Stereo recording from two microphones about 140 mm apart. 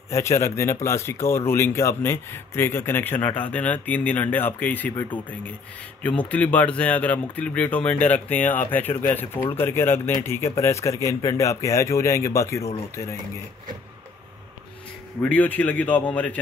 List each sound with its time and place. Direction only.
0.1 s speech: 20° left (ahead or behind)
15.2 s speech: 10° left (ahead or behind)